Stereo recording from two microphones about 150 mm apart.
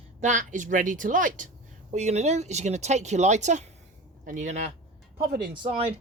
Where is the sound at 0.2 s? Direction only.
55° right (ahead or behind).